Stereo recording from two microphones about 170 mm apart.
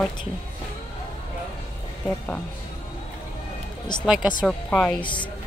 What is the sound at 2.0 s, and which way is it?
Speech, 10° left (ahead or behind).